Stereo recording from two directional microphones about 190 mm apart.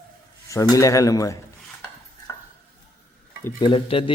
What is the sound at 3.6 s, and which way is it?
Speech, 30° left (ahead or behind).